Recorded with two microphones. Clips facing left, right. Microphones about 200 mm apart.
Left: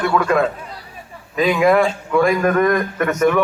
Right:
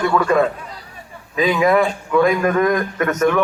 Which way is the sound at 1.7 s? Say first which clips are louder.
Left 1 dB; centre (ahead or behind).